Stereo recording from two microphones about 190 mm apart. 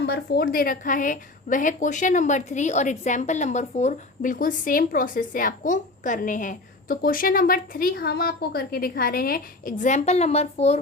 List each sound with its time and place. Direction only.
0.0 s a woman's voice: 55° left (ahead or behind); by 10.8 s 35° left (ahead or behind)